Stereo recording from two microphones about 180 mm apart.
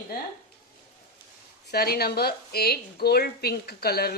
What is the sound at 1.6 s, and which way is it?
Speech, 60° left (ahead or behind).